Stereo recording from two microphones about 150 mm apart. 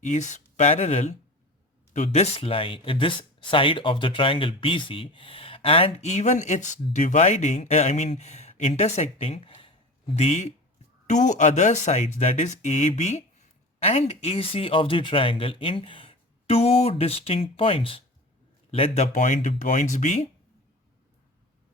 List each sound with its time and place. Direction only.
0.0 s speech: 50° left (ahead or behind)